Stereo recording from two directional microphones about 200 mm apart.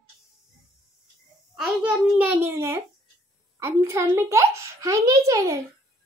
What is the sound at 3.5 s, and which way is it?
A child's voice, 15° right (ahead or behind).